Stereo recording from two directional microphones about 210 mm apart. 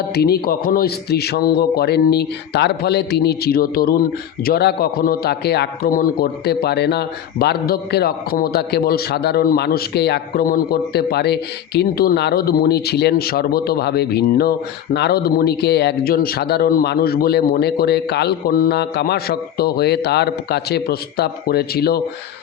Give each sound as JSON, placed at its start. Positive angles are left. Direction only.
{"t": 0.1, "sound": "a man's voice", "side_deg": 50}